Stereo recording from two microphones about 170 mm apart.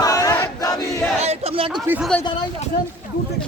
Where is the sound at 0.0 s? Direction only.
20° left (ahead or behind).